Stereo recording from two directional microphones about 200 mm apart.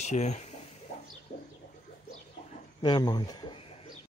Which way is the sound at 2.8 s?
20° left (ahead or behind).